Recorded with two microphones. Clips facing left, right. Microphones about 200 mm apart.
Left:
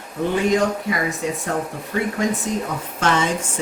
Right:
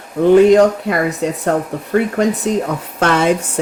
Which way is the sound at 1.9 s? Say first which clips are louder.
Right 7 dB; 50° right (ahead or behind).